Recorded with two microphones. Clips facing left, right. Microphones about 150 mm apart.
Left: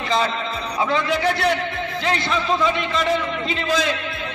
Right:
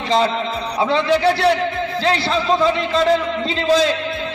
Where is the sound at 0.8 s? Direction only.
30° right (ahead or behind).